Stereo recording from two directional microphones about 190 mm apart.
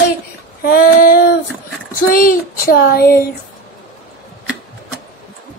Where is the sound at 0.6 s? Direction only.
50° left (ahead or behind).